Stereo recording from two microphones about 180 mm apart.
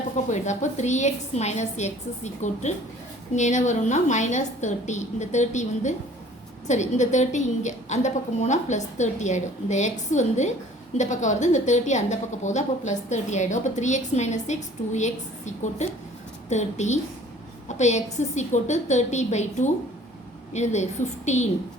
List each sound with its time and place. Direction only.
0.3 s a woman's voice: 40° left (ahead or behind)